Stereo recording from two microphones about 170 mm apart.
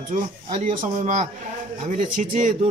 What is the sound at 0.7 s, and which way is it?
Speech, 45° right (ahead or behind).